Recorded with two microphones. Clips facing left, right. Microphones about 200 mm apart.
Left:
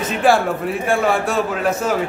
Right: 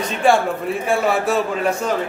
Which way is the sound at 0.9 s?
Centre (ahead or behind).